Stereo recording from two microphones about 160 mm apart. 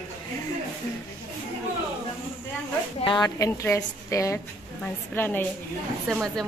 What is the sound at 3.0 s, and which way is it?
Speech, 30° left (ahead or behind).